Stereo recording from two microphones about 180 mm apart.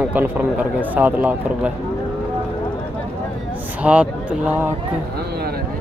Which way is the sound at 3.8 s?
5° right (ahead or behind).